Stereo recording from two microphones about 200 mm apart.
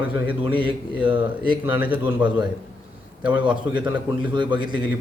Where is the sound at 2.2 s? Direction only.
5° right (ahead or behind).